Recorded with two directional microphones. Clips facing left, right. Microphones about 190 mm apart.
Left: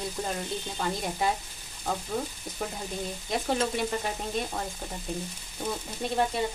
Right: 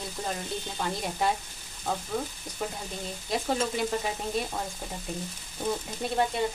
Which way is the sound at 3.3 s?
Centre (ahead or behind).